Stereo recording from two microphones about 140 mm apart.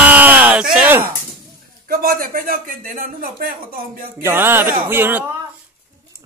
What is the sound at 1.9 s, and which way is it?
Speech, 90° right.